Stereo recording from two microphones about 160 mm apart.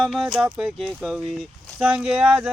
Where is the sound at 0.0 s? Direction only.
Centre (ahead or behind).